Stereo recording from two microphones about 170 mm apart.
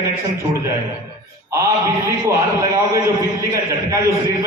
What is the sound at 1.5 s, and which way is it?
A man's voice, 20° right (ahead or behind).